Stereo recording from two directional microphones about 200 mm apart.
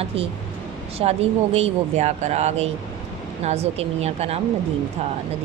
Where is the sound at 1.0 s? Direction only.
30° right (ahead or behind).